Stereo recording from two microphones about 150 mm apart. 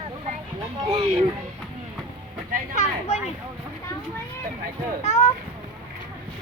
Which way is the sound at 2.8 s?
45° left (ahead or behind).